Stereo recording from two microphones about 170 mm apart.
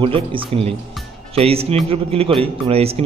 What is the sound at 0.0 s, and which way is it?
A man's voice, 30° right (ahead or behind).